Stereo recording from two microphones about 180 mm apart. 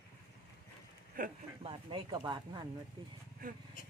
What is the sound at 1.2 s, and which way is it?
Speech, 50° right (ahead or behind).